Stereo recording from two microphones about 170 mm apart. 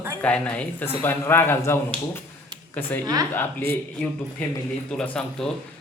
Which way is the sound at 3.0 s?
20° right (ahead or behind).